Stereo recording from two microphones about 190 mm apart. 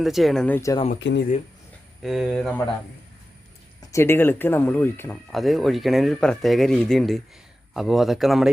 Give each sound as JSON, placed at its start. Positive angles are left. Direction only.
{"t": 0.0, "sound": "speech", "side_deg": 0}
{"t": 0.9, "sound": "speech", "side_deg": 70}
{"t": 2.0, "sound": "speech", "side_deg": 0}
{"t": 3.8, "sound": "speech", "side_deg": 15}
{"t": 5.3, "sound": "speech", "side_deg": 0}